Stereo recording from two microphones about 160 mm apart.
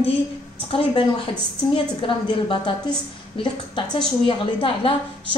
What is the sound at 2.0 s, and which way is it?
A woman's voice, 30° left (ahead or behind).